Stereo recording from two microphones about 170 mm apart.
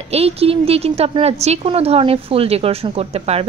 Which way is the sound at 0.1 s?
35° right (ahead or behind).